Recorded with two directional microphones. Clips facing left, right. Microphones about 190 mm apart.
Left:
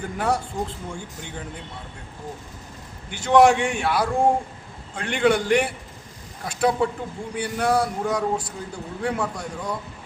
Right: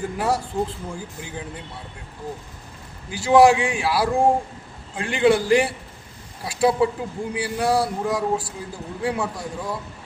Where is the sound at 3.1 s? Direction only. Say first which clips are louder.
Right 2 dB; 5° right (ahead or behind).